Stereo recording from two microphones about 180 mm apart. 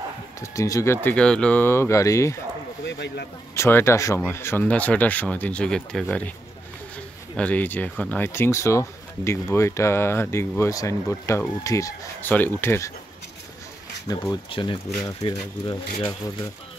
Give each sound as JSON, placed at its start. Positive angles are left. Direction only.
{"t": 0.4, "sound": "speech", "side_deg": 15}
{"t": 1.0, "sound": "speech", "side_deg": 5}
{"t": 2.8, "sound": "speech", "side_deg": 75}
{"t": 3.5, "sound": "speech", "side_deg": 15}
{"t": 7.3, "sound": "speech", "side_deg": 10}
{"t": 14.0, "sound": "speech", "side_deg": 20}